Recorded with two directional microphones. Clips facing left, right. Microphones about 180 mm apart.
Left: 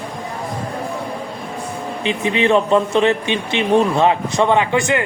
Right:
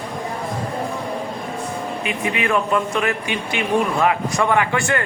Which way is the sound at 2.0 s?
25° left (ahead or behind).